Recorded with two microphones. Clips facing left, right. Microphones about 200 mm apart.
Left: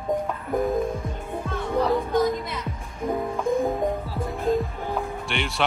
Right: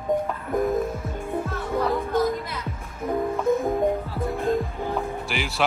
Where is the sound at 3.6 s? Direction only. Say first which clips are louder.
Right 2 dB; centre (ahead or behind).